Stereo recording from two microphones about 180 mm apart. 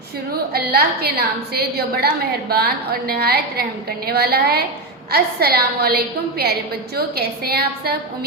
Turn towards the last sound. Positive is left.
turn(degrees=-60)  # may be behind; listen again after turning